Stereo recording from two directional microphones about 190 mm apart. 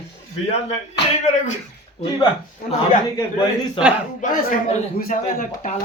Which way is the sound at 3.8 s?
30° left (ahead or behind).